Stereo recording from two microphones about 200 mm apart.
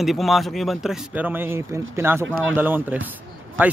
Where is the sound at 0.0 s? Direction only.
Centre (ahead or behind).